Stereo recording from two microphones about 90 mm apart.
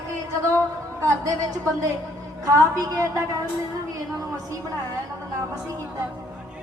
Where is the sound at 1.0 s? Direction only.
40° right (ahead or behind).